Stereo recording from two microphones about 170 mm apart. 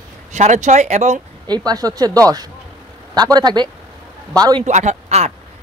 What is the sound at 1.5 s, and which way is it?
Speech, 20° right (ahead or behind).